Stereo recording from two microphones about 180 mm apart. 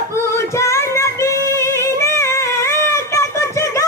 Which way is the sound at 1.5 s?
15° left (ahead or behind).